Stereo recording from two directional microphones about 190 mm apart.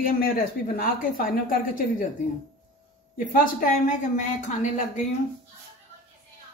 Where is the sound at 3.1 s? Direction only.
45° left (ahead or behind).